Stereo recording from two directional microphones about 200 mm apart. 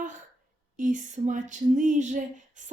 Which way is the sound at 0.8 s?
40° right (ahead or behind).